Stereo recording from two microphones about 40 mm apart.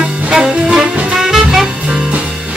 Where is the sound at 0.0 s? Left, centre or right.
Right.